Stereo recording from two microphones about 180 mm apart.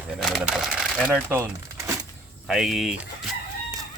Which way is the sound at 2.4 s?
Centre (ahead or behind).